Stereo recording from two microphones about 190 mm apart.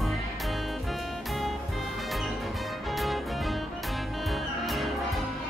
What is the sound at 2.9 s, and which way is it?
Music, centre (ahead or behind).